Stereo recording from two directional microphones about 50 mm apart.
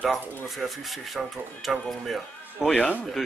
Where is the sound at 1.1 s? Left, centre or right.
Centre.